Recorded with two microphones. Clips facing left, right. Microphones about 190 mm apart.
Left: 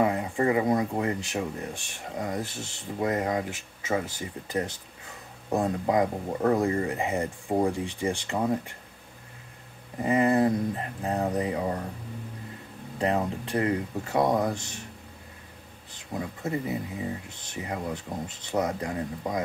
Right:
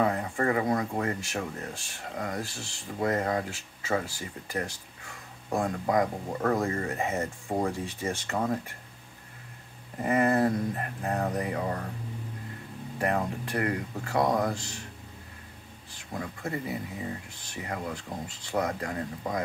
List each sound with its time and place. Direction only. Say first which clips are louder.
0.0 s speech: left 2 dB; 15° left (ahead or behind)
10.0 s speech: left 2 dB; 15° left (ahead or behind)
13.0 s speech: left 2 dB; 20° left (ahead or behind)
15.9 s speech: left 3 dB; 20° left (ahead or behind)